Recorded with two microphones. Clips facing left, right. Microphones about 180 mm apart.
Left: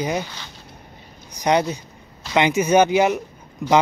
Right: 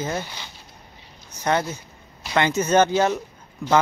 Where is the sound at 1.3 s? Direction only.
15° left (ahead or behind).